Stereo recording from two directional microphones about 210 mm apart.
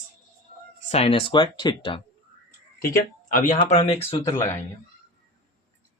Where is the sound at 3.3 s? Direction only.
40° left (ahead or behind).